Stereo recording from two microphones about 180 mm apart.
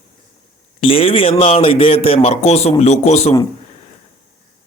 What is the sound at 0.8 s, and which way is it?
Speech, 30° left (ahead or behind).